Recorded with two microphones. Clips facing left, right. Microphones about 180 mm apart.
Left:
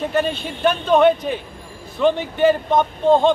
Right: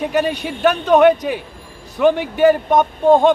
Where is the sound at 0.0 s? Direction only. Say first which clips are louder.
Right 2 dB; 15° right (ahead or behind).